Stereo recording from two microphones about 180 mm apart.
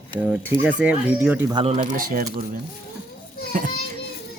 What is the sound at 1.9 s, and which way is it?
Speech, 50° right (ahead or behind).